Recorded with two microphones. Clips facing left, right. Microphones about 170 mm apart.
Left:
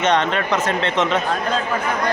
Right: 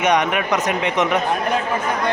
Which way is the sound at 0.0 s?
15° right (ahead or behind).